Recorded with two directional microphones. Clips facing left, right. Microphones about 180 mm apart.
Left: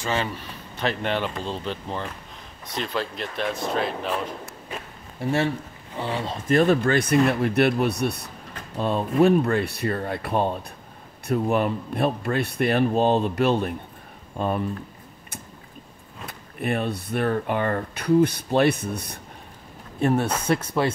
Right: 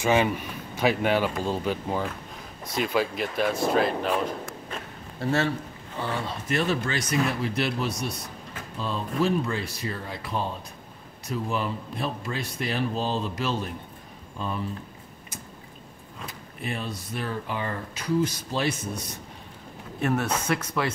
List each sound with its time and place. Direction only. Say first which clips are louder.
0.0 s speech: right 5 dB; 15° right (ahead or behind)
5.2 s speech: left 2 dB; 15° left (ahead or behind)
6.5 s speech: left 8 dB; 50° left (ahead or behind)
16.3 s speech: left 7 dB; 60° left (ahead or behind)
20.0 s speech: left 4 dB; 30° left (ahead or behind)